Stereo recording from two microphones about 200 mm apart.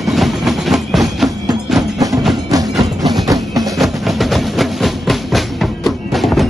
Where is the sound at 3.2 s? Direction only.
15° right (ahead or behind).